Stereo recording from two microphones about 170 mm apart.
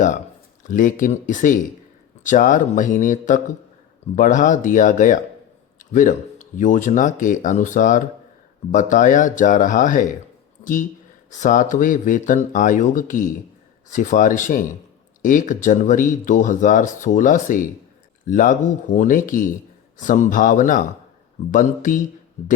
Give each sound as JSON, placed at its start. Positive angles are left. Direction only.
{"t": 0.7, "sound": "speech", "side_deg": 50}
{"t": 11.3, "sound": "speech", "side_deg": 50}